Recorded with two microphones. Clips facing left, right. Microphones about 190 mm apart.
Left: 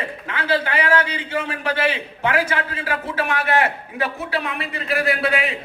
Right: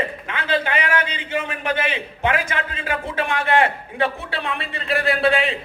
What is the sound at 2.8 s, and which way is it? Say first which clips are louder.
A man's voice: even; 25° right (ahead or behind).